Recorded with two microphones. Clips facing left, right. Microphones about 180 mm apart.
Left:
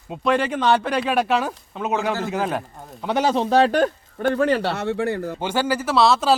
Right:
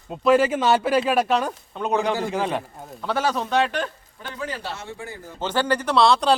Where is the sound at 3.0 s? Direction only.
15° left (ahead or behind); by 3.9 s 40° left (ahead or behind).